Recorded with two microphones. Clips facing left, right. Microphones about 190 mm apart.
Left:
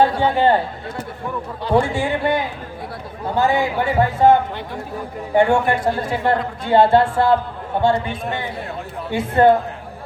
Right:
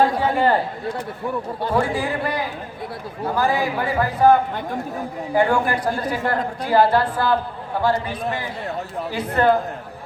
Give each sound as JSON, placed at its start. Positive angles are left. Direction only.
{"t": 0.2, "sound": "a man's voice", "side_deg": 25}
{"t": 1.7, "sound": "a man's voice", "side_deg": 25}